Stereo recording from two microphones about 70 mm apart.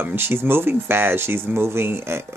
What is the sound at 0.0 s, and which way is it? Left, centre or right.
Speech, right.